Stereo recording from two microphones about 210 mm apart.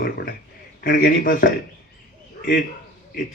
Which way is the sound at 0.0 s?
45° left (ahead or behind).